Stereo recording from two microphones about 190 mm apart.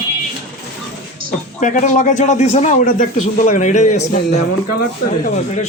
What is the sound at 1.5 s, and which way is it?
A man's voice, 40° left (ahead or behind).